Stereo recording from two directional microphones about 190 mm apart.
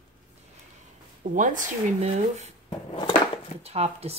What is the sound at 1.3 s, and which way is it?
A woman's voice, 45° right (ahead or behind).